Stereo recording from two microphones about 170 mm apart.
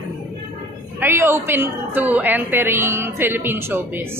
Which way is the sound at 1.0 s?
15° right (ahead or behind).